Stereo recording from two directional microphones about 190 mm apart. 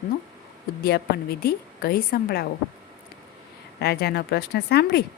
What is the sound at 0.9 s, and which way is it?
A woman's voice, 55° left (ahead or behind).